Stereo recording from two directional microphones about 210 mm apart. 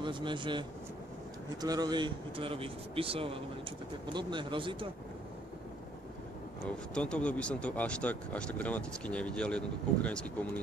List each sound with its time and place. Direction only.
0.0 s speech: 20° right (ahead or behind)
6.9 s speech: 5° left (ahead or behind)